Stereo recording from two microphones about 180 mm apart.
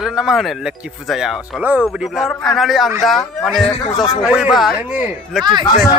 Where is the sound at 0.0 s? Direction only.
Centre (ahead or behind).